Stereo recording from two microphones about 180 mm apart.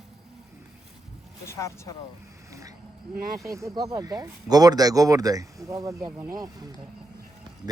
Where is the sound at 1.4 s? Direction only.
15° left (ahead or behind).